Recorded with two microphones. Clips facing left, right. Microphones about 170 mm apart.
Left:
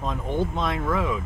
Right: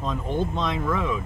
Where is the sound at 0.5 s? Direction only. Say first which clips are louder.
Even; 5° left (ahead or behind).